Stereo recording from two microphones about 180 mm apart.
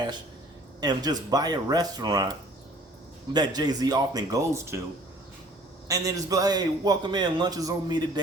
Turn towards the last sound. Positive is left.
turn(degrees=-20)  # may be behind; listen again after turning